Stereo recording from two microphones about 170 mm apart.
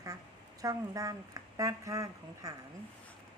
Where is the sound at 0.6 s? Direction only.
20° right (ahead or behind).